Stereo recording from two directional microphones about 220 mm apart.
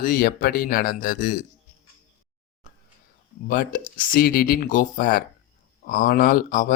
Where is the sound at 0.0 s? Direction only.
40° left (ahead or behind).